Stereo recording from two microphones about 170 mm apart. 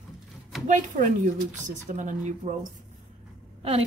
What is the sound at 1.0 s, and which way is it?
Speech, 45° right (ahead or behind).